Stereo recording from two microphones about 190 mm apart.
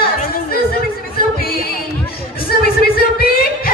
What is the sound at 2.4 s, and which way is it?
Music, 50° left (ahead or behind).